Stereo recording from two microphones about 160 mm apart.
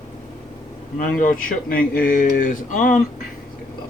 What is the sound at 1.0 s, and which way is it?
Speech, 60° left (ahead or behind).